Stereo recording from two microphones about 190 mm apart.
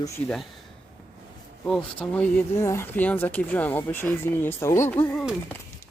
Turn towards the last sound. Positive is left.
turn(degrees=0)  # may be behind; listen again after turning